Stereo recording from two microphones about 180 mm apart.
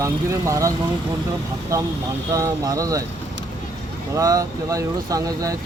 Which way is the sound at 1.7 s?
15° right (ahead or behind).